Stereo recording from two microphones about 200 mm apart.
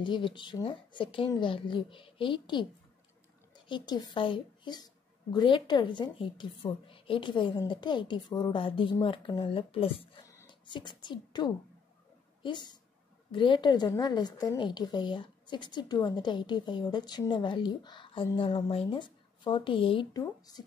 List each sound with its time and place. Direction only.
0.0 s a woman's voice: 25° left (ahead or behind)
10.2 s a sound: 25° left (ahead or behind)
12.4 s a woman's voice: 20° left (ahead or behind)